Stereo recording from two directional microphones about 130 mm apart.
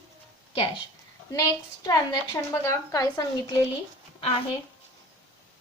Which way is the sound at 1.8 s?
25° left (ahead or behind).